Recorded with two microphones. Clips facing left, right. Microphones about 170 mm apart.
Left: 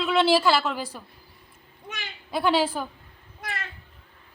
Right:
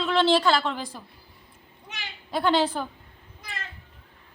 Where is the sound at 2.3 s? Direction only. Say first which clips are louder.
Even; 5° left (ahead or behind).